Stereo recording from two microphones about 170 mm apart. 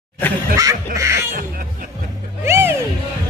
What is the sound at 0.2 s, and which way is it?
Snicker, 10° left (ahead or behind).